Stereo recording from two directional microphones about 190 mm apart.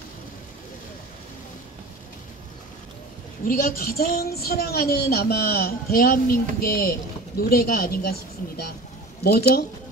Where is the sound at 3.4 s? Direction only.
50° left (ahead or behind).